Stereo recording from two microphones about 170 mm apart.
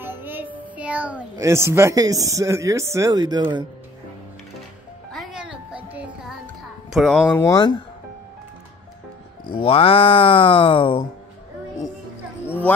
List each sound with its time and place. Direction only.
0.0 s child singing: 10° right (ahead or behind)
0.7 s a child's voice: 10° right (ahead or behind); by 3.6 s 25° right (ahead or behind)
5.1 s music: centre (ahead or behind)
6.9 s speech: centre (ahead or behind)
7.4 s speech: 25° left (ahead or behind)
9.6 s speech: 35° left (ahead or behind)
12.4 s a sound: 10° left (ahead or behind)